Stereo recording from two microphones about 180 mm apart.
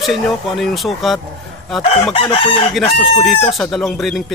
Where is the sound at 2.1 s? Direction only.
30° left (ahead or behind).